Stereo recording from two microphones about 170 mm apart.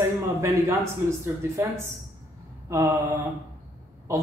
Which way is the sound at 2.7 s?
20° right (ahead or behind).